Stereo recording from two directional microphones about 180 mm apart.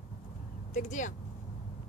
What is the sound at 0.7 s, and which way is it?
Speech, 45° left (ahead or behind).